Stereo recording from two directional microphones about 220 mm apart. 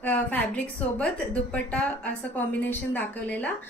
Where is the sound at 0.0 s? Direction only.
5° left (ahead or behind).